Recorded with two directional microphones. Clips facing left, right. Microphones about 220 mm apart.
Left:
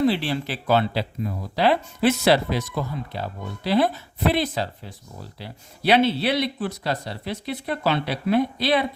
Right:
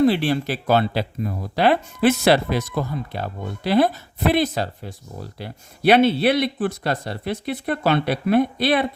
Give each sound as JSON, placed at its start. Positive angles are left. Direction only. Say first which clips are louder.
{"t": 0.0, "sound": "speech", "louder": "right 4 dB", "side_deg": -50}